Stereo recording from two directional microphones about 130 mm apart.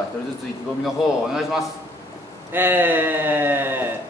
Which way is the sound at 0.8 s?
5° right (ahead or behind).